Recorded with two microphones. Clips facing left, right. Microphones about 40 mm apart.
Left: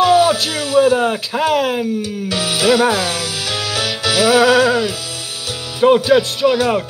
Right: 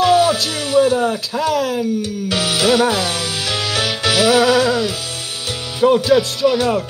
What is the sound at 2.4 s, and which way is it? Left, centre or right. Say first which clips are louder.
Speech: left 1 dB; centre.